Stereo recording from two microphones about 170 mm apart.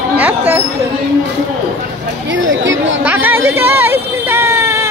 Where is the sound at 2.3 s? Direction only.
90° right.